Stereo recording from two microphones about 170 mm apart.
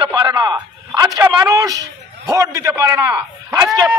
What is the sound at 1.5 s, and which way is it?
A man's voice, 20° right (ahead or behind).